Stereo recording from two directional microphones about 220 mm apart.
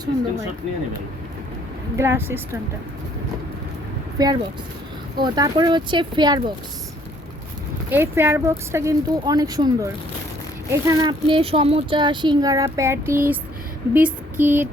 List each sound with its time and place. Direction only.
2.0 s speech: 10° right (ahead or behind)
4.2 s speech: 15° right (ahead or behind)
7.9 s speech: 10° right (ahead or behind)
13.9 s a sound: 10° right (ahead or behind)